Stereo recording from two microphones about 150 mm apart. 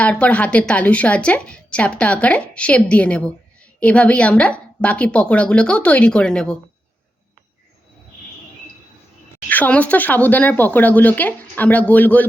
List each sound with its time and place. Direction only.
0.0 s a woman's voice: 10° left (ahead or behind)
9.5 s a woman's voice: 10° left (ahead or behind)